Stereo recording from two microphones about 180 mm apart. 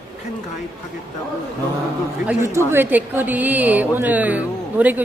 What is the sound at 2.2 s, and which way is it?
Speech, 15° right (ahead or behind).